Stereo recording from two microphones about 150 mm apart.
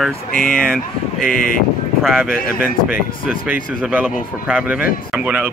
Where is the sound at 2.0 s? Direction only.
5° right (ahead or behind).